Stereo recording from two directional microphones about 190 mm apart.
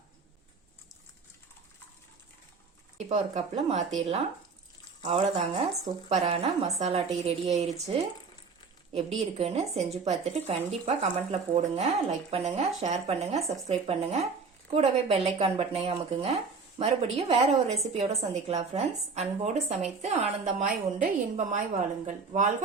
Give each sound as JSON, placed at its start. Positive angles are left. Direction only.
{"t": 3.1, "sound": "a woman's voice", "side_deg": -35}
{"t": 9.0, "sound": "a woman's voice", "side_deg": -30}